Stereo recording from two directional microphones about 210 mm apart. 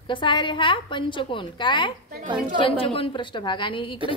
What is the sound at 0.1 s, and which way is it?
A woman's voice, 25° left (ahead or behind).